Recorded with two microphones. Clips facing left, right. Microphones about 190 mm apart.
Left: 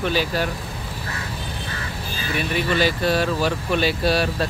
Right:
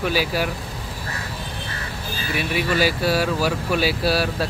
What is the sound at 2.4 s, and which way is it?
Speech, 5° right (ahead or behind).